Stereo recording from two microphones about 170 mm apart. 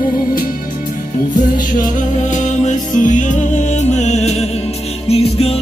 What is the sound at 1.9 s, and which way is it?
Music, 45° left (ahead or behind).